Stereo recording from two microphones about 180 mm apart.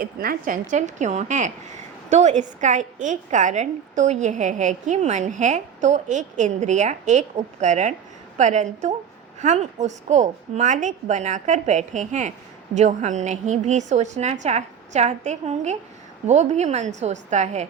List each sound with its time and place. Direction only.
0.0 s a woman's voice: 55° right (ahead or behind); by 17.7 s 40° right (ahead or behind)